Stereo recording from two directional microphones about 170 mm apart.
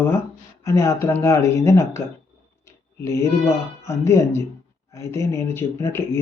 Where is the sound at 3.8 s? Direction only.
15° left (ahead or behind).